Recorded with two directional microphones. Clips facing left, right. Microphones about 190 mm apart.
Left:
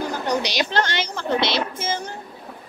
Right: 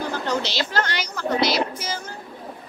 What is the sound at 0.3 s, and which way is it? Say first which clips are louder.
A woman's voice: left 3 dB; 15° left (ahead or behind).